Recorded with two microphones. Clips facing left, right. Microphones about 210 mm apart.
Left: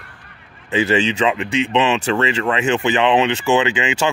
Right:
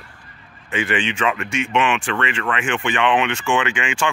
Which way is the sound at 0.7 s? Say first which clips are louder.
Left 6 dB; 40° left (ahead or behind).